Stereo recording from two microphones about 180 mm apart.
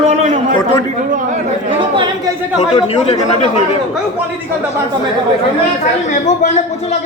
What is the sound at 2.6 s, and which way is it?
Speech, 35° left (ahead or behind).